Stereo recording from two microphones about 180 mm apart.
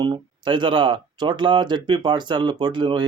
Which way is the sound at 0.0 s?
25° right (ahead or behind).